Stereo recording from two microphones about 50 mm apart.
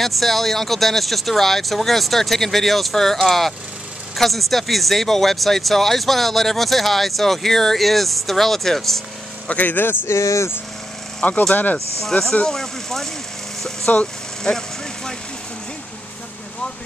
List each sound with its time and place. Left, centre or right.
0.0 s speech: centre
9.5 s a man's voice: left
10.0 s speech: left
11.2 s a man's voice: left
12.0 s speech: centre
13.6 s vehicle: centre
14.5 s speech: left